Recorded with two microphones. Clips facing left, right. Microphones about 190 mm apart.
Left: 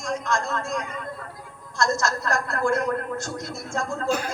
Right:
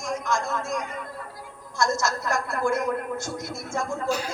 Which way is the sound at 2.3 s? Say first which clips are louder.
Left 2 dB; 5° right (ahead or behind).